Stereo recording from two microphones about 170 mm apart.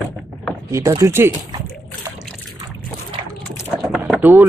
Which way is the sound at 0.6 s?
20° right (ahead or behind).